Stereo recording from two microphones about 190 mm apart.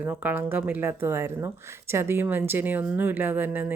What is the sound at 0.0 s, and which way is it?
Speech, 10° right (ahead or behind).